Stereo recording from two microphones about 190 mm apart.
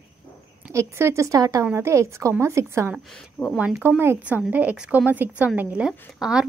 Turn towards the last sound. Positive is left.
turn(degrees=-5)  # may be behind; listen again after turning